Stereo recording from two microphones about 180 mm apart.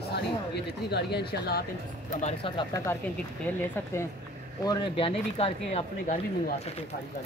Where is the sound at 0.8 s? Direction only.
65° left (ahead or behind).